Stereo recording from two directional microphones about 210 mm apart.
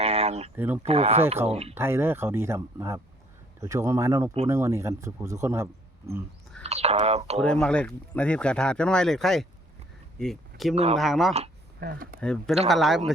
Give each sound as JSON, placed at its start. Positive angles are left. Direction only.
{"t": 0.0, "sound": "a sound", "side_deg": -30}
{"t": 0.5, "sound": "speech", "side_deg": -10}
{"t": 0.8, "sound": "speech", "side_deg": -30}
{"t": 1.7, "sound": "speech", "side_deg": -10}
{"t": 6.6, "sound": "speech", "side_deg": -30}
{"t": 7.4, "sound": "speech", "side_deg": 5}
{"t": 11.8, "sound": "speech", "side_deg": -45}
{"t": 12.2, "sound": "speech", "side_deg": 5}